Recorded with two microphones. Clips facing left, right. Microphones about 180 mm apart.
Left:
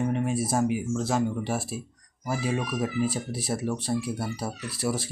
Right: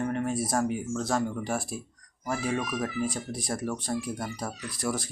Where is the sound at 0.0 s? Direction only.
15° left (ahead or behind).